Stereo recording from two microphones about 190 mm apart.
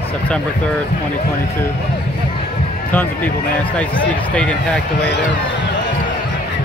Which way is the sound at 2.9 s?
10° left (ahead or behind).